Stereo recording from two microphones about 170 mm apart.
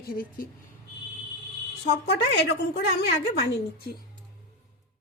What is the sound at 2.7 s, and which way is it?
Speech, 80° left.